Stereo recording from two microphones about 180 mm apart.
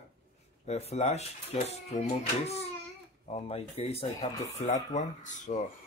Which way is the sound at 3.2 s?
30° left (ahead or behind).